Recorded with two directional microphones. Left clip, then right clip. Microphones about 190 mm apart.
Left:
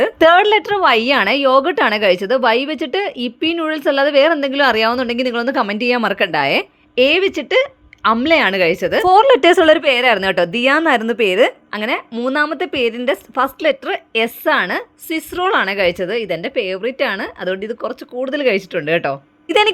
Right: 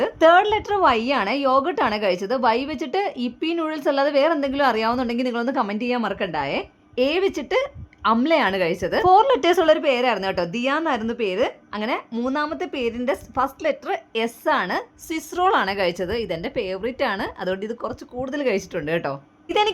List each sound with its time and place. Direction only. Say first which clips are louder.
0.0 s a woman's voice: left 5 dB; 20° left (ahead or behind)